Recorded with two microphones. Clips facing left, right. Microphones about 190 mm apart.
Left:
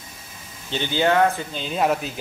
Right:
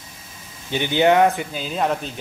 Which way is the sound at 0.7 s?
15° right (ahead or behind).